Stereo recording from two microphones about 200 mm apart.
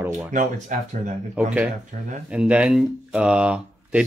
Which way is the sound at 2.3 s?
5° right (ahead or behind).